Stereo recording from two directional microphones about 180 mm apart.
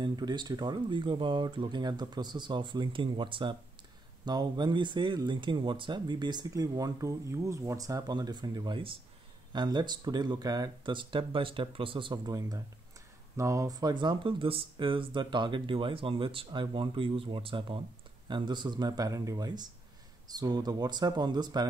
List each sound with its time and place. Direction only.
0.0 s speech: 25° right (ahead or behind)